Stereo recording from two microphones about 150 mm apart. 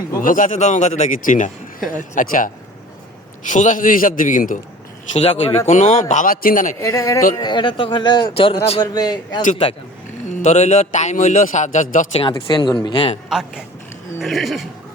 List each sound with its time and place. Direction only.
0.2 s a man's voice: 65° left (ahead or behind)
5.1 s a man's voice: 40° left (ahead or behind); by 6.7 s 65° left (ahead or behind)
6.7 s speech: 20° left (ahead or behind); by 8.8 s 40° left (ahead or behind)
8.8 s a man's voice: 25° left (ahead or behind)
10.2 s a man's voice: 50° left (ahead or behind)
12.3 s speech: 30° left (ahead or behind)
14.2 s speech: centre (ahead or behind)